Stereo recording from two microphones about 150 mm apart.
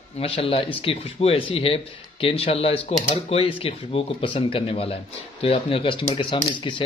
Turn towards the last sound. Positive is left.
turn(degrees=30)  # may be behind; listen again after turning